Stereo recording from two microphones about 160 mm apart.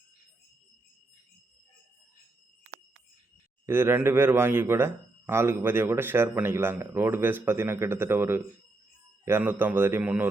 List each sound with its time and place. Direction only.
3.7 s speech: 15° right (ahead or behind)